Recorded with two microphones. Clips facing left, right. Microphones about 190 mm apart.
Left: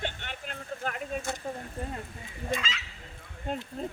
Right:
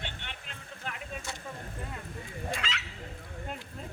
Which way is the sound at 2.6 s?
65° right (ahead or behind).